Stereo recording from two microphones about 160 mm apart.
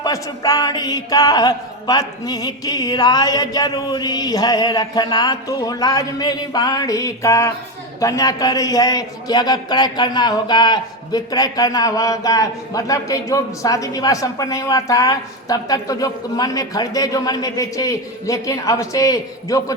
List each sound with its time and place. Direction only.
0.0 s a man's voice: 20° left (ahead or behind)